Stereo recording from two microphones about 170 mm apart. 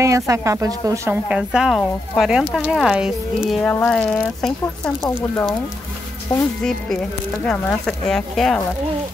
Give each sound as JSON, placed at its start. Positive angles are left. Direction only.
{"t": 0.0, "sound": "a woman's voice", "side_deg": -20}
{"t": 6.6, "sound": "speech", "side_deg": 5}